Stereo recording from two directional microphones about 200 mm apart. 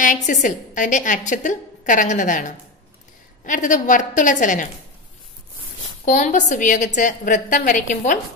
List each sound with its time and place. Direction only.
0.0 s a woman's voice: 40° left (ahead or behind)
6.0 s a woman's voice: 35° left (ahead or behind)